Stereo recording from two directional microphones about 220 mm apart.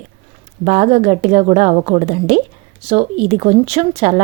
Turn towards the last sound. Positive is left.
turn(degrees=-30)  # may be behind; listen again after turning